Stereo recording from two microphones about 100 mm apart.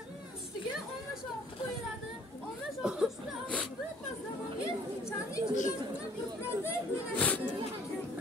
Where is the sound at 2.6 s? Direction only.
5° right (ahead or behind).